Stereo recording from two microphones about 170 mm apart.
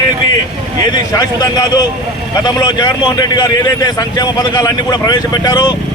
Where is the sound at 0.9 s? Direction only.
20° left (ahead or behind).